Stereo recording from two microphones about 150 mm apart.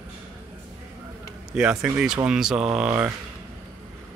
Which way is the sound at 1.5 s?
5° right (ahead or behind).